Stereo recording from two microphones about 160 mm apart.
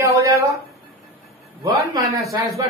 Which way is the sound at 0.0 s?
20° right (ahead or behind).